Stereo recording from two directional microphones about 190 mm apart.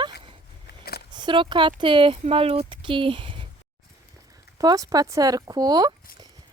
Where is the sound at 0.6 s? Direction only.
55° left (ahead or behind).